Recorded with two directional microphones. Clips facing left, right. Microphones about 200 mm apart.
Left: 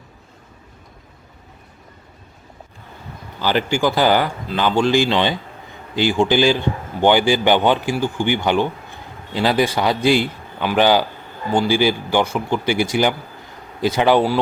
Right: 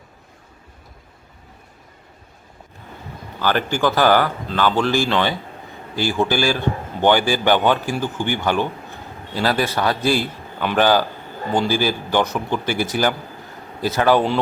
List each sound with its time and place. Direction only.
3.4 s speech: 15° left (ahead or behind)